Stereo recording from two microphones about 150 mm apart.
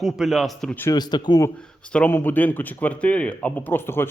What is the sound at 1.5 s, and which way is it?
Speech, 5° left (ahead or behind).